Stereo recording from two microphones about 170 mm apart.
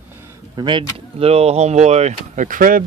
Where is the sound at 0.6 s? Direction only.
30° right (ahead or behind); by 2.8 s 55° right (ahead or behind).